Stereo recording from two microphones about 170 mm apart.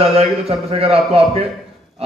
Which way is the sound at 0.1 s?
35° right (ahead or behind).